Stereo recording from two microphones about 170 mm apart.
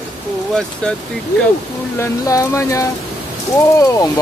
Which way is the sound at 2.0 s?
20° left (ahead or behind).